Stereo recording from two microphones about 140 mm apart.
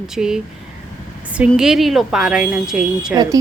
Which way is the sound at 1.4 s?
5° right (ahead or behind).